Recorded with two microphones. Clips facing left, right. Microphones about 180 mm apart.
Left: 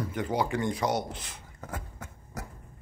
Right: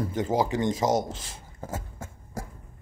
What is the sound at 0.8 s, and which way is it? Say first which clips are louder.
Speech: right 6 dB; 45° right (ahead or behind).